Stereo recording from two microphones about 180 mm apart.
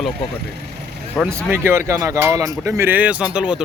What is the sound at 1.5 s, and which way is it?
Speech, 15° right (ahead or behind).